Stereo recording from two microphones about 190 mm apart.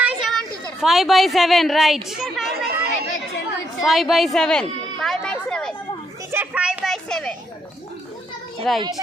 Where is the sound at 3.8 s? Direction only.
Centre (ahead or behind).